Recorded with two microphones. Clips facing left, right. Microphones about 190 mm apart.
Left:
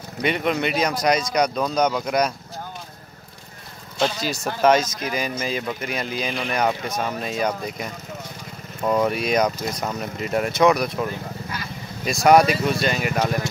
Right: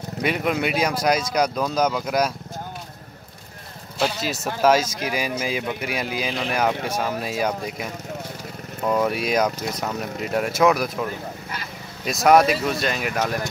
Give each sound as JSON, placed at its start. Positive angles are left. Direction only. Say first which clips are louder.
{"t": 0.2, "sound": "speech", "louder": "left 1 dB", "side_deg": -5}
{"t": 4.0, "sound": "speech", "louder": "left 1 dB", "side_deg": -5}